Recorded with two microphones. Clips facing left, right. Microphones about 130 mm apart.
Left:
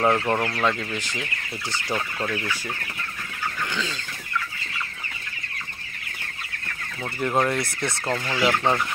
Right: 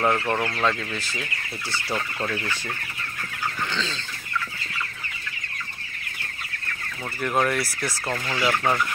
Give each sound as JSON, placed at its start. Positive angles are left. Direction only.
{"t": 0.0, "sound": "speech", "side_deg": 15}
{"t": 0.9, "sound": "speech", "side_deg": 15}
{"t": 7.2, "sound": "speech", "side_deg": 20}